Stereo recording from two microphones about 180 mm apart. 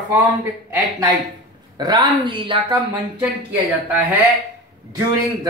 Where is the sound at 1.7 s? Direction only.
25° right (ahead or behind).